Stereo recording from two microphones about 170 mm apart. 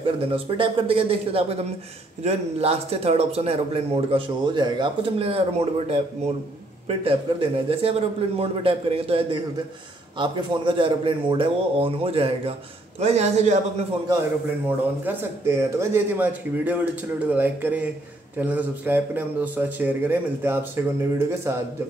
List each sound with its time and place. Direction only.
0.0 s speech: 30° right (ahead or behind)
15.0 s speech: 15° right (ahead or behind)